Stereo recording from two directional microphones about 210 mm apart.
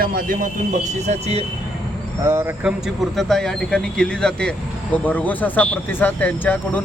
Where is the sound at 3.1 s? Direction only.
Centre (ahead or behind).